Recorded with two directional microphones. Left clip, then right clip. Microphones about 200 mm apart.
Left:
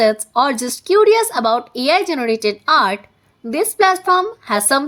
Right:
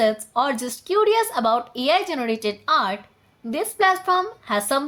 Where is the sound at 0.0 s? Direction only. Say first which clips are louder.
Left 6 dB; 35° left (ahead or behind).